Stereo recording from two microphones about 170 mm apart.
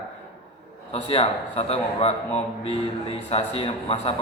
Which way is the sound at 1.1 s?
35° left (ahead or behind).